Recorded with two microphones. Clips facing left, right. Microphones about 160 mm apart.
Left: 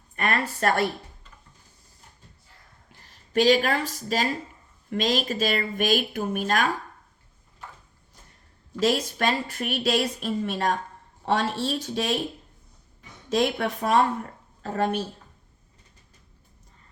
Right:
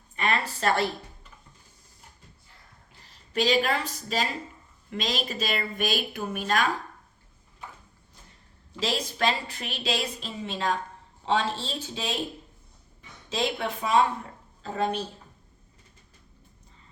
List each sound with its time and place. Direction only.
0.2 s a sound: 55° left (ahead or behind)
3.0 s speech: 45° left (ahead or behind)
8.8 s speech: 50° left (ahead or behind); by 12.2 s 70° left (ahead or behind)
13.3 s a woman's voice: 55° left (ahead or behind)